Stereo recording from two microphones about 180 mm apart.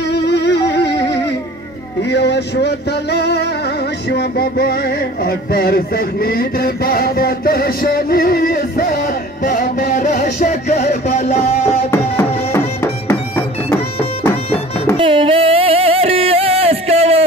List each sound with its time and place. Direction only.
0.1 s music: 70° left (ahead or behind)
2.0 s a sound: 70° left (ahead or behind)
4.1 s music: 60° left (ahead or behind); by 10.8 s 40° left (ahead or behind)
10.9 s speech: 40° left (ahead or behind)
11.9 s music: 15° left (ahead or behind)
15.0 s music: 30° right (ahead or behind)